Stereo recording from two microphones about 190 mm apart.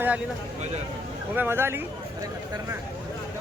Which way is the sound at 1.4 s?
10° right (ahead or behind).